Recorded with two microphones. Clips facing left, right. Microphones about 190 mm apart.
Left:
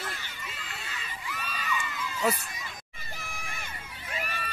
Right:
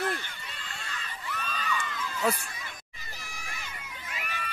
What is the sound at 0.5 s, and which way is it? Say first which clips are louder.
Crowd: left 2 dB; 5° left (ahead or behind).